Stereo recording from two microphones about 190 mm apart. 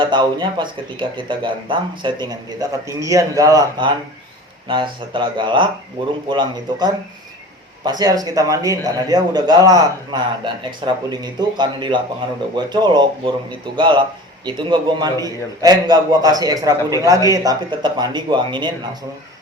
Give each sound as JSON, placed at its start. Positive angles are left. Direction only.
{"t": 0.0, "sound": "speech", "side_deg": -25}